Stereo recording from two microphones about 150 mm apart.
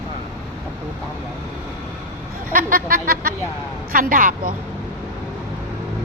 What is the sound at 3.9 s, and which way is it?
Speech, 65° right (ahead or behind).